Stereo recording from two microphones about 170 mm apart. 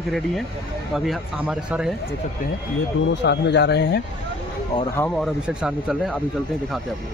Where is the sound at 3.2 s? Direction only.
90° left.